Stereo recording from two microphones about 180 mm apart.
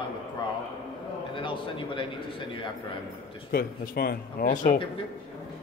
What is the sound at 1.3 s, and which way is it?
Speech, 30° left (ahead or behind).